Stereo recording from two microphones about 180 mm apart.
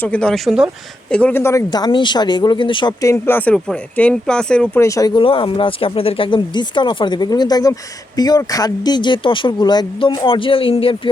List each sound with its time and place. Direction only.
0.0 s speech: 5° left (ahead or behind)
1.1 s speech: 10° left (ahead or behind); by 11.1 s 30° left (ahead or behind)